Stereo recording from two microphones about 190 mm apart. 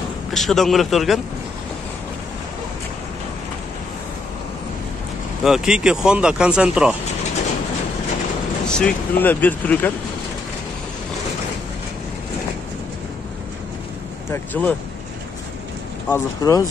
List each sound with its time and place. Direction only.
0.3 s speech: centre (ahead or behind)
5.4 s speech: 5° right (ahead or behind)
8.6 s speech: 5° left (ahead or behind)
14.3 s speech: 10° left (ahead or behind)
16.1 s speech: 15° left (ahead or behind)